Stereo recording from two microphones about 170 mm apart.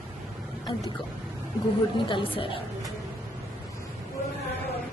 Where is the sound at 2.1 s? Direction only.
30° left (ahead or behind).